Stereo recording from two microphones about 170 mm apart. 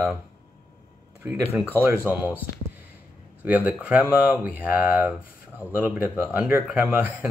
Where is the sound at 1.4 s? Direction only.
10° right (ahead or behind).